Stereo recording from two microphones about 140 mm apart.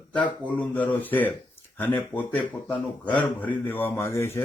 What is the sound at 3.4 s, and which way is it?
Speech, 10° left (ahead or behind).